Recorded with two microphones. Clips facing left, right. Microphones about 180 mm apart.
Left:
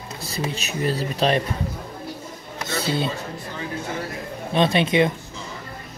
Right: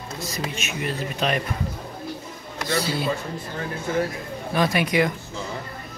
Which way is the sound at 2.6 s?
25° left (ahead or behind).